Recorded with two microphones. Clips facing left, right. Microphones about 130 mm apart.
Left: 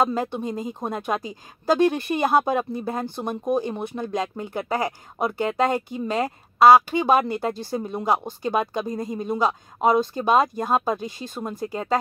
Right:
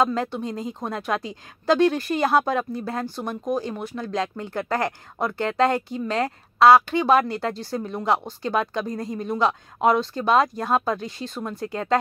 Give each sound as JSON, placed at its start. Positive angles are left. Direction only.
{"t": 0.0, "sound": "speech", "side_deg": 15}